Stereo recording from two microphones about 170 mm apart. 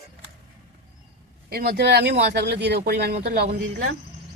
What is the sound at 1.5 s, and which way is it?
Speech, 70° right (ahead or behind).